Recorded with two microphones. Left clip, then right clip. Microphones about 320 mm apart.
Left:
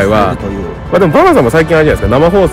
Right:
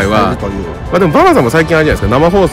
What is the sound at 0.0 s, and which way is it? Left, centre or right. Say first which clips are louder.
Speech: left 1 dB; centre.